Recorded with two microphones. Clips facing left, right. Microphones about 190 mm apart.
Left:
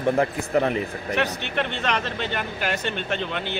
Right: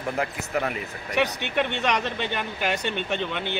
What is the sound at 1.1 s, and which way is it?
Speech, 15° right (ahead or behind).